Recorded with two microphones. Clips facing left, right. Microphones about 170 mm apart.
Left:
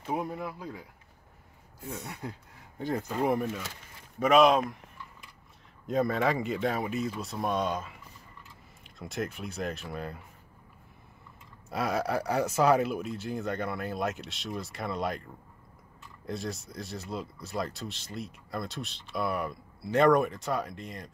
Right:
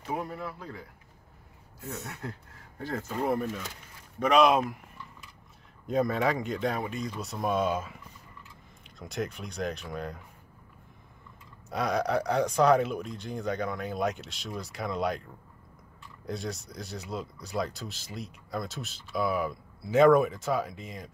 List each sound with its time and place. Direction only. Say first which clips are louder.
0.1 s speech: left 1 dB; 15° left (ahead or behind)
1.9 s speech: even; 10° left (ahead or behind); by 4.7 s 5° right (ahead or behind)
5.9 s speech: even; centre (ahead or behind)
11.7 s speech: right 2 dB; 5° left (ahead or behind)
16.3 s speech: even; centre (ahead or behind)